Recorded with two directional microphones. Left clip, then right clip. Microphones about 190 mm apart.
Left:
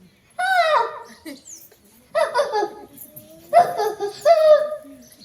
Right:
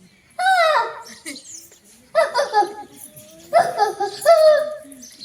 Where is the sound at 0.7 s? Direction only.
30° left (ahead or behind).